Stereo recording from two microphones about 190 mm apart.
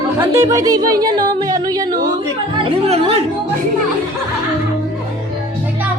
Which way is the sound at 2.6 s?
30° right (ahead or behind).